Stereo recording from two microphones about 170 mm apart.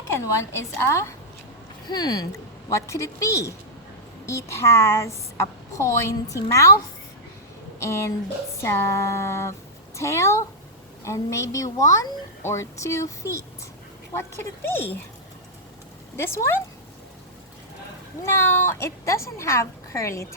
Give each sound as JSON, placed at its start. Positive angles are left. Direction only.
{"t": 0.5, "sound": "a woman's voice", "side_deg": 15}
{"t": 16.1, "sound": "a woman's voice", "side_deg": 15}
{"t": 18.3, "sound": "a woman's voice", "side_deg": 15}